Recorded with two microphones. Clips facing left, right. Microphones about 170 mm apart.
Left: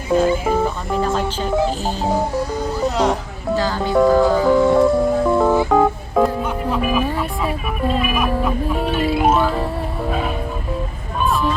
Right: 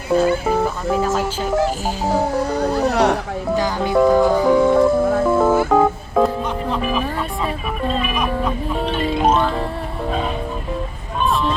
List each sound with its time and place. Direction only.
0.1 s speech: 5° right (ahead or behind)
2.5 s speech: 70° right (ahead or behind)
3.5 s speech: 15° right (ahead or behind)
3.9 s speech: centre (ahead or behind)
4.2 s music: 20° right (ahead or behind)
4.4 s music: centre (ahead or behind)